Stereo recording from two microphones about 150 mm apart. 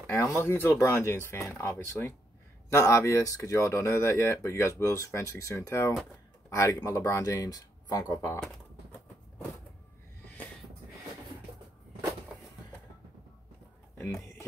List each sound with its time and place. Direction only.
0.0 s speech: 10° left (ahead or behind)